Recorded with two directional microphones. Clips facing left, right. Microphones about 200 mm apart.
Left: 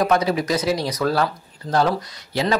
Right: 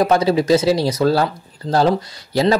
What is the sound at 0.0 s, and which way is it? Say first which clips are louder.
Speech: right 4 dB; 30° right (ahead or behind).